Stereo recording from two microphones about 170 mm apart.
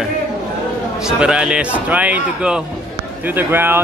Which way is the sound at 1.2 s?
5° right (ahead or behind).